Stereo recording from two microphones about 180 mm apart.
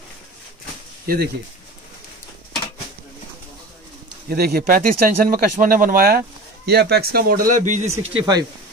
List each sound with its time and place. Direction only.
1.0 s speech: 55° right (ahead or behind)
4.3 s speech: 55° right (ahead or behind)
8.2 s speech: 20° right (ahead or behind)